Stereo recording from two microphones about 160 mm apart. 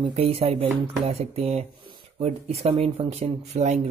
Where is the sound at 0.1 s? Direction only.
40° right (ahead or behind).